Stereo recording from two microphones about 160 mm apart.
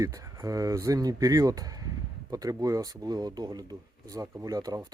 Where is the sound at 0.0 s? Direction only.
20° right (ahead or behind).